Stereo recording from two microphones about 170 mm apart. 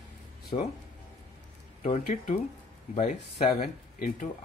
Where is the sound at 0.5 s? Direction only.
40° left (ahead or behind).